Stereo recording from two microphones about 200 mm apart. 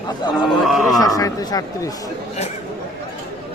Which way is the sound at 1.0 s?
20° left (ahead or behind).